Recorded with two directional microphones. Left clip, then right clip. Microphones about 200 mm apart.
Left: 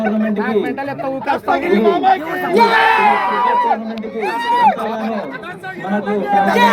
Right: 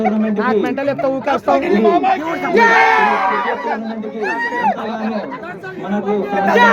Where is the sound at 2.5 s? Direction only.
10° right (ahead or behind).